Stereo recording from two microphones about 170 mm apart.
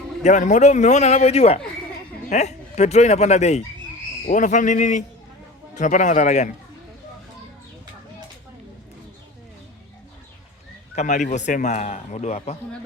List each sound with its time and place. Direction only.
0.2 s a man's voice: 45° left (ahead or behind)
10.9 s a man's voice: 45° left (ahead or behind)